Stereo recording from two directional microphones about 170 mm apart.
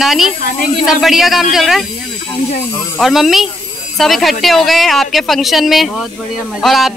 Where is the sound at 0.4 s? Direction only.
55° left (ahead or behind).